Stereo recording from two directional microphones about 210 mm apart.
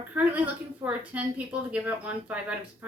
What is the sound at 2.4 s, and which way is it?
Speech, 5° right (ahead or behind).